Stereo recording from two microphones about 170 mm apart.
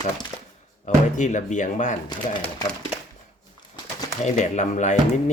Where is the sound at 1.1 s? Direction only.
45° left (ahead or behind).